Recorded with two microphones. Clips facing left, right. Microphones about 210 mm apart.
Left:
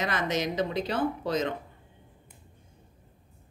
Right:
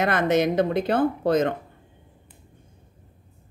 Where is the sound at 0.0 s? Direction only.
55° right (ahead or behind).